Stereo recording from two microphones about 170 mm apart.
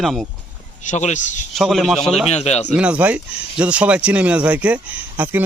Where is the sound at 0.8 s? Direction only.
45° left (ahead or behind).